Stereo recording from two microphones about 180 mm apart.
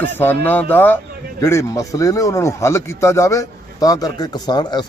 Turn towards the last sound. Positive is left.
turn(degrees=25)  # may be behind; listen again after turning